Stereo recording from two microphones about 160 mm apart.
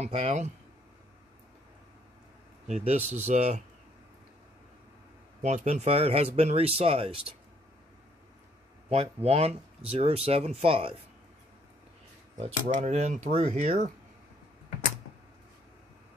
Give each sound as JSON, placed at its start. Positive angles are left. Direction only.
{"t": 0.0, "sound": "speech", "side_deg": -45}
{"t": 2.7, "sound": "speech", "side_deg": -45}
{"t": 5.4, "sound": "speech", "side_deg": -45}
{"t": 8.8, "sound": "speech", "side_deg": -40}
{"t": 12.4, "sound": "speech", "side_deg": -45}